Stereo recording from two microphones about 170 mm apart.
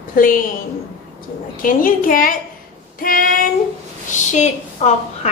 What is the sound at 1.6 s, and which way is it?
A woman's voice, 55° left (ahead or behind).